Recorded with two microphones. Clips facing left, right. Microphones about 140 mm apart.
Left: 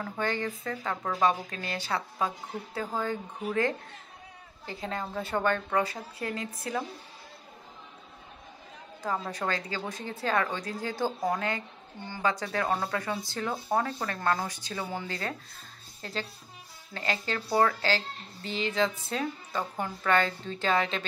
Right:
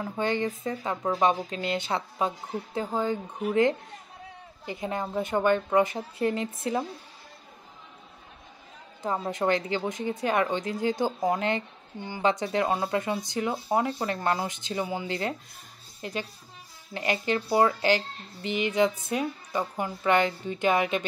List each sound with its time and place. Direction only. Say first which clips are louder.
0.0 s a woman's voice: right 4 dB; 20° right (ahead or behind)
9.0 s a woman's voice: right 5 dB; 20° right (ahead or behind)